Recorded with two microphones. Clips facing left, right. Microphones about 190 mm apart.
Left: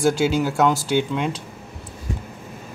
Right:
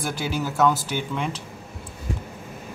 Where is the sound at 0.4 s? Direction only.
15° left (ahead or behind).